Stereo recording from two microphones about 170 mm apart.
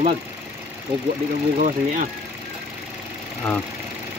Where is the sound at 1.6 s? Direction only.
50° right (ahead or behind).